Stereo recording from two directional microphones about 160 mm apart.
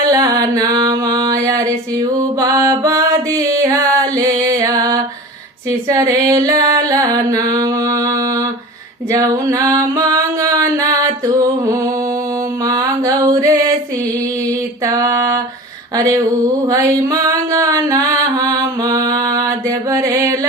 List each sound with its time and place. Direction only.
0.0 s music: 20° right (ahead or behind)
9.1 s music: 20° right (ahead or behind)
12.6 s mantra: 20° right (ahead or behind)
14.8 s a sound: 20° right (ahead or behind)
16.6 s music: 20° right (ahead or behind)